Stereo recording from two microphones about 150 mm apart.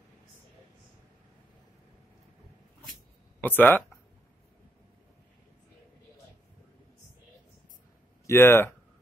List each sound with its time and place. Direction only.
3.3 s speech: 10° left (ahead or behind)
8.3 s speech: 15° left (ahead or behind)